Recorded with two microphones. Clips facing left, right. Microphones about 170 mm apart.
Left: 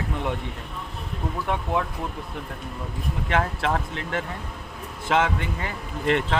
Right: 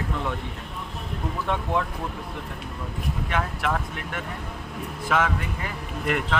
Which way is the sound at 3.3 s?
30° left (ahead or behind).